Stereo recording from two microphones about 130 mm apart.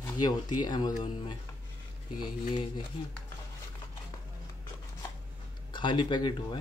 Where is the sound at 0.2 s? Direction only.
35° left (ahead or behind).